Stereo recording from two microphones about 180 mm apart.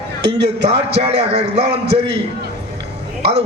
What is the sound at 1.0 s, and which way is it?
Speech, 35° right (ahead or behind).